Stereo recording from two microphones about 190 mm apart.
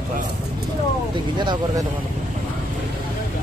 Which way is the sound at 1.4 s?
25° right (ahead or behind).